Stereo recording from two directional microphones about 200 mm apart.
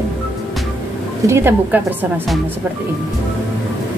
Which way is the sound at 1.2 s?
10° right (ahead or behind).